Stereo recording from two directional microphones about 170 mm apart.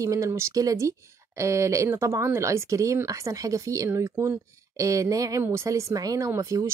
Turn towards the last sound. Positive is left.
turn(degrees=-20)  # may be behind; listen again after turning